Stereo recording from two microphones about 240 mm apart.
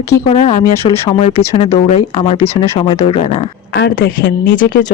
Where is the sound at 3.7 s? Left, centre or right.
Left.